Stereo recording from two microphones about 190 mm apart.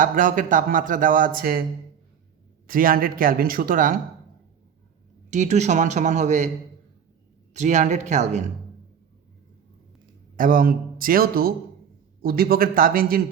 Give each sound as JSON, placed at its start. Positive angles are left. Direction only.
{"t": 0.0, "sound": "speech", "side_deg": -45}
{"t": 2.6, "sound": "speech", "side_deg": -50}
{"t": 5.3, "sound": "speech", "side_deg": -40}
{"t": 7.5, "sound": "speech", "side_deg": -40}
{"t": 10.3, "sound": "speech", "side_deg": -45}